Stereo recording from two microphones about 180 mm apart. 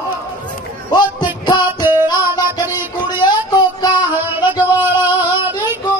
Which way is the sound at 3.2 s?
20° left (ahead or behind).